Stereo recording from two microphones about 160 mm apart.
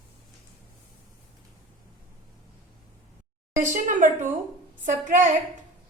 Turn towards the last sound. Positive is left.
turn(degrees=-50)  # may be behind; listen again after turning